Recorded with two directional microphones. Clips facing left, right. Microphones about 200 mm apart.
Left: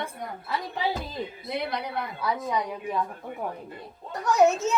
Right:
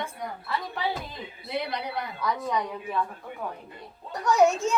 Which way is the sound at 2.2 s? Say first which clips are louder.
Even; 10° left (ahead or behind).